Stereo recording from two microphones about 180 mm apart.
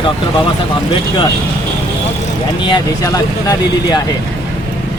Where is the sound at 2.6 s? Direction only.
20° left (ahead or behind).